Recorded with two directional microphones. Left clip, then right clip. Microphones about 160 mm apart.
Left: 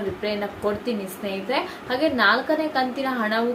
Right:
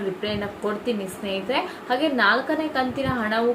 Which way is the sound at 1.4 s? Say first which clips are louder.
Even; 5° right (ahead or behind).